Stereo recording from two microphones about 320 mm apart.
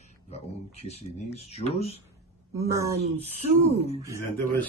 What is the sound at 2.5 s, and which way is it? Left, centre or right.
Speech, centre.